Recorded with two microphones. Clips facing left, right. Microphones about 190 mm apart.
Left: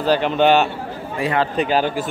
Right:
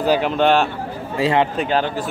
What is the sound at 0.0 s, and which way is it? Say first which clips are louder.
Speech: even; 10° right (ahead or behind).